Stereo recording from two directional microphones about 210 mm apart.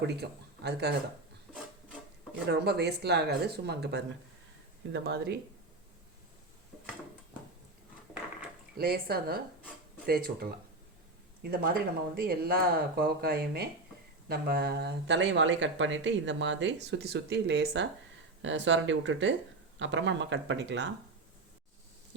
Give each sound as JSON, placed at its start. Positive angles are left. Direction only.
{"t": 0.0, "sound": "speech", "side_deg": -50}
{"t": 2.5, "sound": "speech", "side_deg": -50}
{"t": 8.8, "sound": "speech", "side_deg": -45}